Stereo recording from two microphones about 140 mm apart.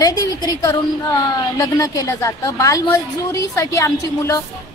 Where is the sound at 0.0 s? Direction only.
25° left (ahead or behind).